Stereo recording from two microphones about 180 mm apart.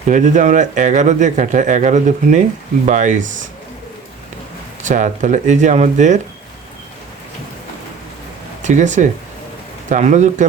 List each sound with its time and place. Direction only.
0.1 s speech: 45° right (ahead or behind)
4.8 s speech: 45° right (ahead or behind)
8.6 s speech: 40° right (ahead or behind)